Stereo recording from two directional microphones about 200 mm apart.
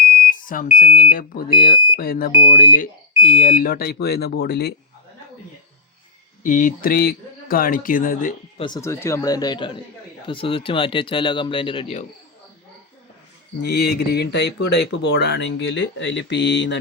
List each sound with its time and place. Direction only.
0.3 s speech: 40° left (ahead or behind)
6.4 s speech: 40° left (ahead or behind)
8.5 s speech: 20° left (ahead or behind)
13.6 s speech: 55° left (ahead or behind)